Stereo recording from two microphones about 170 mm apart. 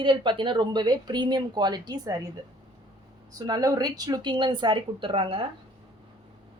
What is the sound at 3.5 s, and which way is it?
Speech, 25° right (ahead or behind).